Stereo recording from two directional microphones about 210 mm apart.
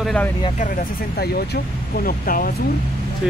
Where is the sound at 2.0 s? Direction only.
45° left (ahead or behind).